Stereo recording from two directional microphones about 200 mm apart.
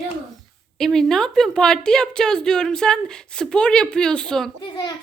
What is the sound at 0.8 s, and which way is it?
A woman's voice, centre (ahead or behind).